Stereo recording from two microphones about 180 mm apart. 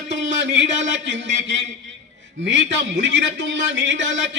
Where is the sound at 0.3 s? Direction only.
80° right.